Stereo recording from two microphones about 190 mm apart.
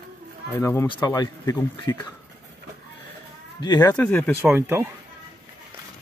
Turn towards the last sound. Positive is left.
turn(degrees=-10)  # may be behind; listen again after turning